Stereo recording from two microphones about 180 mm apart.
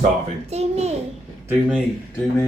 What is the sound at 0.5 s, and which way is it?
Speech, 35° right (ahead or behind).